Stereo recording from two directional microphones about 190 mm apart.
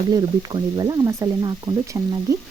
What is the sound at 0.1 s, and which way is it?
Speech, 20° right (ahead or behind).